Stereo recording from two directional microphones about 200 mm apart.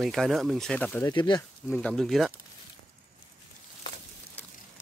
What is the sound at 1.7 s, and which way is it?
Speech, 5° left (ahead or behind).